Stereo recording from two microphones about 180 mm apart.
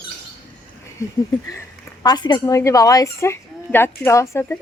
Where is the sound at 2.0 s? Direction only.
25° left (ahead or behind).